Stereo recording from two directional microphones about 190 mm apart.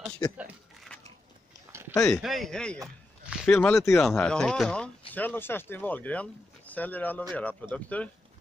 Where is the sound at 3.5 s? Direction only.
10° left (ahead or behind).